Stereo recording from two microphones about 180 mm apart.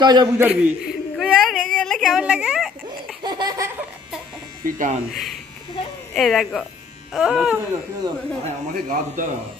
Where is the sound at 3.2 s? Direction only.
25° right (ahead or behind).